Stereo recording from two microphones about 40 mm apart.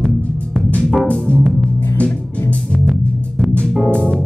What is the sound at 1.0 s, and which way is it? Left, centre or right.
Music, left.